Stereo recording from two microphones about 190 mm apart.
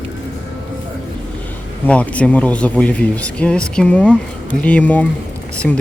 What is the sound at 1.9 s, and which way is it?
Speech, 5° left (ahead or behind).